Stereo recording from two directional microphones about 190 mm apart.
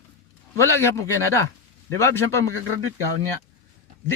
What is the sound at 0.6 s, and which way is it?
Speech, 15° left (ahead or behind).